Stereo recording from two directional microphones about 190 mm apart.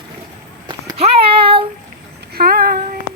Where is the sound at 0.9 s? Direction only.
30° right (ahead or behind).